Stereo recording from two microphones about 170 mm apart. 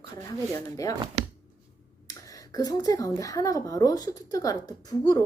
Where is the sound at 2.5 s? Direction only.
20° left (ahead or behind).